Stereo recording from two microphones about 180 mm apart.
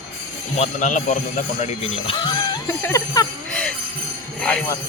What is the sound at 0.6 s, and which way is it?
Speech, 40° left (ahead or behind).